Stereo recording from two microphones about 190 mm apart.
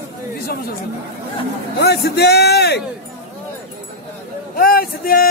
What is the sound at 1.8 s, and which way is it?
A man's voice, 60° left (ahead or behind).